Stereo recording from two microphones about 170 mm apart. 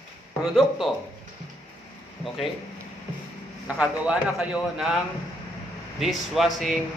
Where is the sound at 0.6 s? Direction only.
Centre (ahead or behind).